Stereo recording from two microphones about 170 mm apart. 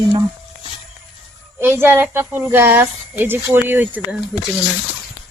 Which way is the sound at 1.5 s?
15° right (ahead or behind).